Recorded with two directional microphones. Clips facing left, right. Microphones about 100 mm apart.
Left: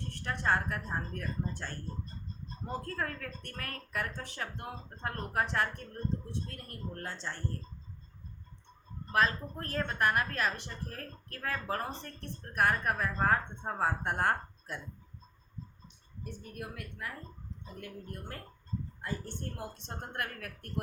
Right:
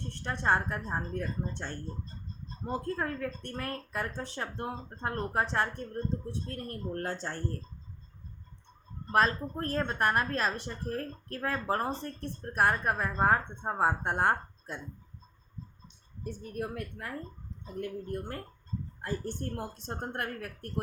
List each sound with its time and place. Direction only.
0.0 s speech: 30° right (ahead or behind)
6.5 s speech: 40° right (ahead or behind)
9.1 s speech: 35° right (ahead or behind)
16.6 s speech: 35° right (ahead or behind)